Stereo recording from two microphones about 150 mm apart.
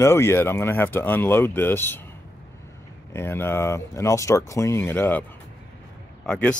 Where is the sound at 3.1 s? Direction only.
15° left (ahead or behind).